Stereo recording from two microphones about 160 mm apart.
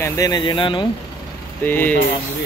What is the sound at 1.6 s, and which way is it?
Speech, 10° left (ahead or behind).